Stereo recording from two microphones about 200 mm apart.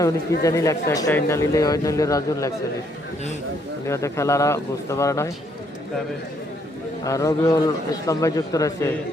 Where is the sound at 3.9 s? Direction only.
15° left (ahead or behind).